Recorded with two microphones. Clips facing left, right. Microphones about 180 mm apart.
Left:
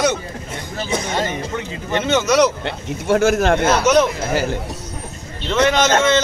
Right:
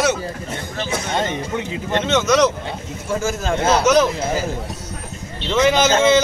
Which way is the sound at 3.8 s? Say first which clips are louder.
Right 1 dB; centre (ahead or behind).